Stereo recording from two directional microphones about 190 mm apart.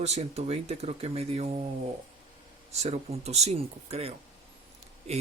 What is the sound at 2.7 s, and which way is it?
Speech, 35° right (ahead or behind).